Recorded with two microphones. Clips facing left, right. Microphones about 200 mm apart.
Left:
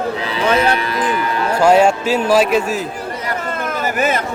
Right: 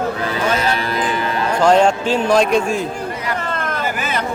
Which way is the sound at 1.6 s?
10° left (ahead or behind).